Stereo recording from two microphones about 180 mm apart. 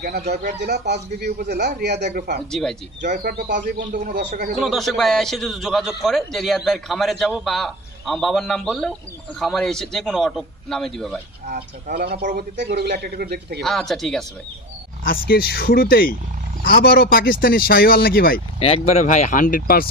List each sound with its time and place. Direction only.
0.0 s a man's voice: 65° right (ahead or behind)
2.0 s a man's voice: 45° right (ahead or behind)
2.5 s a man's voice: 5° left (ahead or behind)
3.1 s a man's voice: 50° right (ahead or behind)
4.6 s a man's voice: centre (ahead or behind)
11.4 s a man's voice: 55° right (ahead or behind)
13.6 s a man's voice: centre (ahead or behind)
15.0 s speech: 55° left (ahead or behind)
18.6 s speech: 35° left (ahead or behind); by 19.9 s 55° left (ahead or behind)